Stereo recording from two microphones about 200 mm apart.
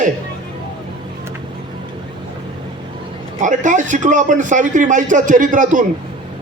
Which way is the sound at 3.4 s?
40° right (ahead or behind).